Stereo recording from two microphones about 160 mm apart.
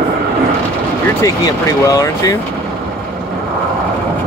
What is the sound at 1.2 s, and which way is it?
Speech, 20° left (ahead or behind).